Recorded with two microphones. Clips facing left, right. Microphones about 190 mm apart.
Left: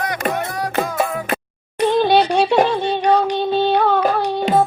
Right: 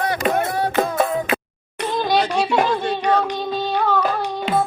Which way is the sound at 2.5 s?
30° left (ahead or behind).